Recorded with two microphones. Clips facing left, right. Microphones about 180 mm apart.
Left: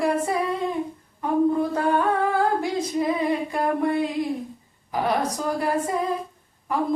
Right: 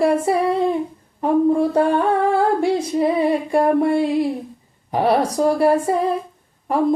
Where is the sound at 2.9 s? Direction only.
30° right (ahead or behind).